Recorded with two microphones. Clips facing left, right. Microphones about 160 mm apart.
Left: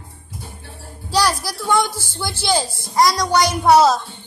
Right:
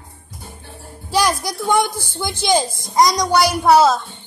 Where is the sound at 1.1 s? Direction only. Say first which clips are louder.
Right 1 dB; 15° right (ahead or behind); by 4.0 s centre (ahead or behind).